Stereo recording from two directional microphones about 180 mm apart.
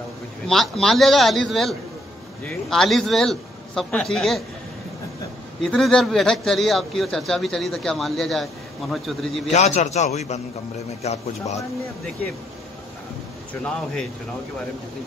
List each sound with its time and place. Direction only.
0.5 s a man's voice: centre (ahead or behind)
5.6 s a man's voice: 5° left (ahead or behind)
9.5 s a man's voice: 40° left (ahead or behind)
13.7 s a man's voice: 5° left (ahead or behind)